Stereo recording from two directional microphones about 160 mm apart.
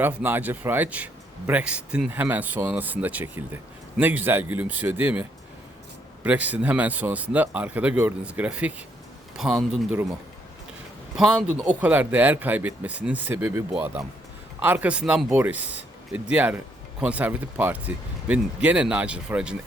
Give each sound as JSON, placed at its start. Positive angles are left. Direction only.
{"t": 0.0, "sound": "a man's voice", "side_deg": -10}
{"t": 6.2, "sound": "a man's voice", "side_deg": -10}
{"t": 11.2, "sound": "a man's voice", "side_deg": -5}